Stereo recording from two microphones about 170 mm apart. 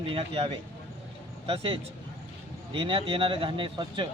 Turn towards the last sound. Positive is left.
turn(degrees=-30)  # may be behind; listen again after turning